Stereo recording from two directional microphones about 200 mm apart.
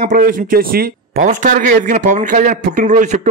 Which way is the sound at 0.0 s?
45° right (ahead or behind).